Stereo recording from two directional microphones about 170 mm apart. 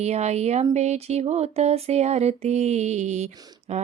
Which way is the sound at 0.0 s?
40° right (ahead or behind).